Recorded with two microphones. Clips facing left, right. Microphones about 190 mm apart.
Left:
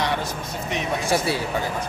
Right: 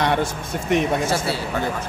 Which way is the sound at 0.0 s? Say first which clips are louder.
Right 4 dB; 55° right (ahead or behind).